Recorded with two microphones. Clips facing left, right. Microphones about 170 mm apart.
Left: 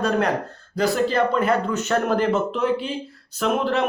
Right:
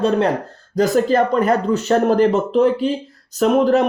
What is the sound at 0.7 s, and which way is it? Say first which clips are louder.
Speech: right 5 dB; 45° right (ahead or behind).